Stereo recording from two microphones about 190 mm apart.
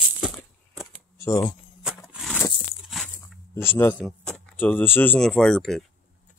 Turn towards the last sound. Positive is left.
turn(degrees=0)  # may be behind; listen again after turning